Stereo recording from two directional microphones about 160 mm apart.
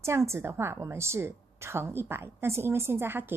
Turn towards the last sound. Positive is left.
turn(degrees=-15)  # may be behind; listen again after turning